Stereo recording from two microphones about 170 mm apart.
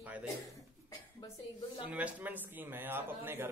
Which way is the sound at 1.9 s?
10° right (ahead or behind).